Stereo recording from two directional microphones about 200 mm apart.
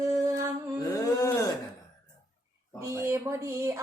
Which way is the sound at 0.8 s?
15° left (ahead or behind).